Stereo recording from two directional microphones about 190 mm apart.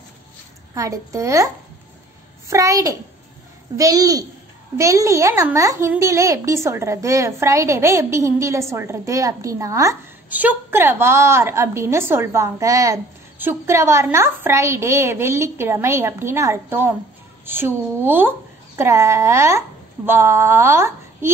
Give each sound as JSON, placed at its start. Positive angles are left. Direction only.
{"t": 0.7, "sound": "a child's voice", "side_deg": -15}